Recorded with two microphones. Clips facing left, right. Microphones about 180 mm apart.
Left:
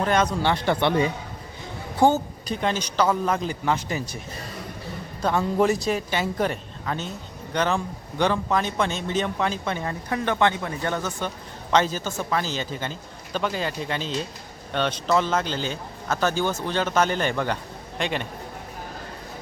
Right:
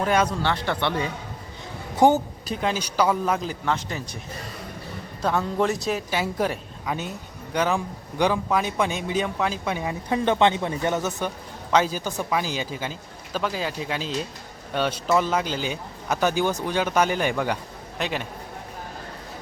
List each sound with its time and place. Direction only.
0.0 s speech: 10° right (ahead or behind)
0.4 s speech: 15° left (ahead or behind)
2.0 s a woman's voice: 15° right (ahead or behind)
2.5 s a woman's voice: 5° right (ahead or behind)
5.2 s a woman's voice: 5° left (ahead or behind)